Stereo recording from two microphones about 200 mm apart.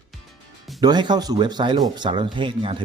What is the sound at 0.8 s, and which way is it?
Speech, 20° right (ahead or behind).